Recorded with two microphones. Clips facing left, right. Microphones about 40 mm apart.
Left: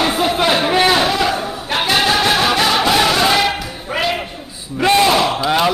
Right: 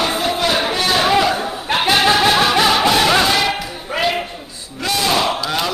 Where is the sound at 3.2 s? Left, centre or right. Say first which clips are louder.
Left 2 dB; centre.